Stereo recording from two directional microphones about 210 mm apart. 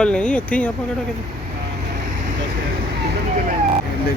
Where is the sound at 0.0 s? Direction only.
5° left (ahead or behind).